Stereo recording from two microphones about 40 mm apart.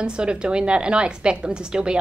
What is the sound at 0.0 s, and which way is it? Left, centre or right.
A woman's voice, right.